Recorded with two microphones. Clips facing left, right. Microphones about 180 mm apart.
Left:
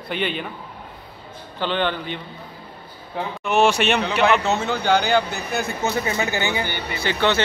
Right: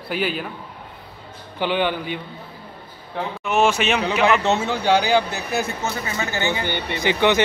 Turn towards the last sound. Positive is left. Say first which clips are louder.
# right 3 dB
turn(degrees=-15)  # may be behind; listen again after turning